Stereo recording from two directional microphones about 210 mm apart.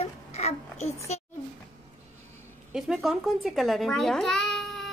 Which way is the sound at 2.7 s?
Centre (ahead or behind).